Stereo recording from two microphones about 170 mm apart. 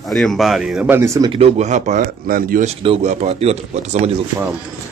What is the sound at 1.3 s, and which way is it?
Speech, 40° right (ahead or behind).